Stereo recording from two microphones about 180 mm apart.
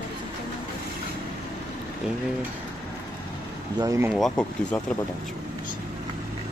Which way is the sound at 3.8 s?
20° right (ahead or behind).